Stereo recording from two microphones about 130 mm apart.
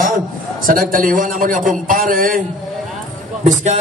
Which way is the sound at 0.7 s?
90° right.